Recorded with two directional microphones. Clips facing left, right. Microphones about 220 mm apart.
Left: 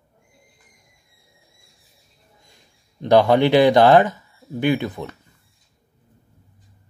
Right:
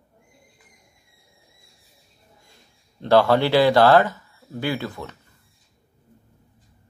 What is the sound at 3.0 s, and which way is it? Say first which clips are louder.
Speech: left 2 dB; 15° left (ahead or behind).